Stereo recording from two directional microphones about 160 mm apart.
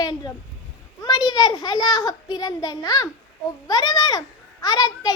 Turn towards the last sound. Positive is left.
turn(degrees=25)  # may be behind; listen again after turning